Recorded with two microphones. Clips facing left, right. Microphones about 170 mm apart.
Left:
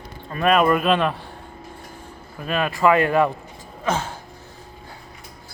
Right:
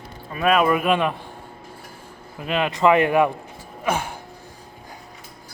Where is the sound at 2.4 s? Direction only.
20° right (ahead or behind).